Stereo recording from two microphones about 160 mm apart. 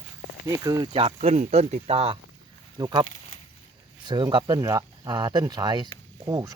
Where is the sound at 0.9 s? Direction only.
40° right (ahead or behind).